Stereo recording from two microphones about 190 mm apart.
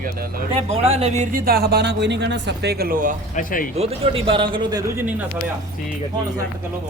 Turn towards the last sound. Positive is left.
turn(degrees=-20)  # may be behind; listen again after turning